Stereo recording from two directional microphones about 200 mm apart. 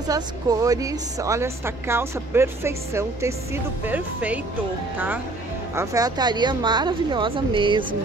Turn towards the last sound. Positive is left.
turn(degrees=-25)  # may be behind; listen again after turning